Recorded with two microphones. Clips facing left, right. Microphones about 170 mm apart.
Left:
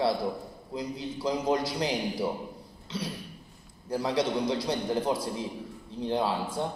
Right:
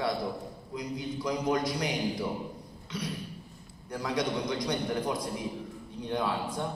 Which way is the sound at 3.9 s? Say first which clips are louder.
Left 3 dB; 30° left (ahead or behind).